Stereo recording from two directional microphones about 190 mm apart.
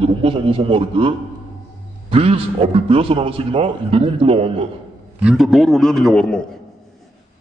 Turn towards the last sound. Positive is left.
turn(degrees=0)  # may be behind; listen again after turning